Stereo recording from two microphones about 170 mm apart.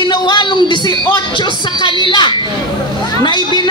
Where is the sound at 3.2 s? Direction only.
25° left (ahead or behind).